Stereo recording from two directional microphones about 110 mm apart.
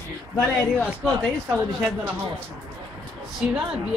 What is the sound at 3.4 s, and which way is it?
Speech, 10° right (ahead or behind).